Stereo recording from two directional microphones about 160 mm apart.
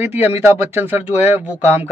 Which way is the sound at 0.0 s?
10° right (ahead or behind).